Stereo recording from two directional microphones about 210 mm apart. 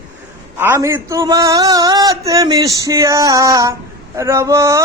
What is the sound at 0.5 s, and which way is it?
Speech, 10° right (ahead or behind).